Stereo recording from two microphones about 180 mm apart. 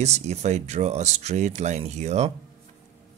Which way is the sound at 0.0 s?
40° right (ahead or behind).